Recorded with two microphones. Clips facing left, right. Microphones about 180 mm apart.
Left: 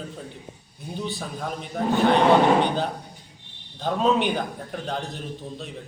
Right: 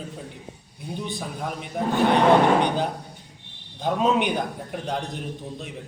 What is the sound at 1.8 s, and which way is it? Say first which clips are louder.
Speech: even; 15° right (ahead or behind).